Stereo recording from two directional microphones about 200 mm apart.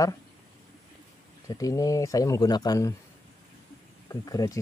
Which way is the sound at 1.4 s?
15° left (ahead or behind).